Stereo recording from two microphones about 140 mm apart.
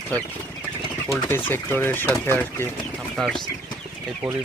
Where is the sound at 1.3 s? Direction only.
15° left (ahead or behind).